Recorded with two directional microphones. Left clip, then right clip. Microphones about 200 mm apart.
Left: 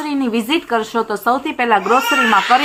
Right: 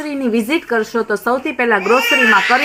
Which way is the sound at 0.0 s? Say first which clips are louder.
Right 1 dB; 15° right (ahead or behind).